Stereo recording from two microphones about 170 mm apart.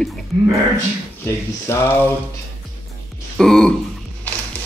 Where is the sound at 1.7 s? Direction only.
15° left (ahead or behind).